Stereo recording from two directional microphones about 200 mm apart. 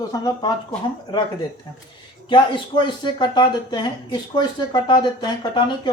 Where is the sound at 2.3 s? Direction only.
25° left (ahead or behind).